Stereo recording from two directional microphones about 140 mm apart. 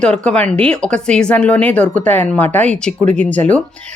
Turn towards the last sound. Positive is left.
turn(degrees=10)  # may be behind; listen again after turning